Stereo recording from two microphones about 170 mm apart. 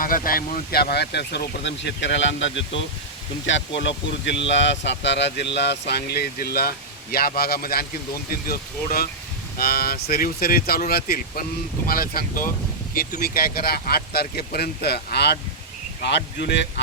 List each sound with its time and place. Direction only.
0.0 s speech: 55° left (ahead or behind); by 15.4 s 75° left (ahead or behind)
16.0 s speech: 90° left